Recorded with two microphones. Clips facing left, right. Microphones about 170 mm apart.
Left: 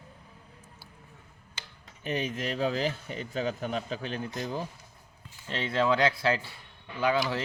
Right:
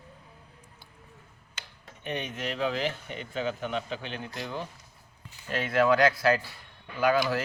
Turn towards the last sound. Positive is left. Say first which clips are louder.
# right 2 dB
turn(degrees=25)  # may be behind; listen again after turning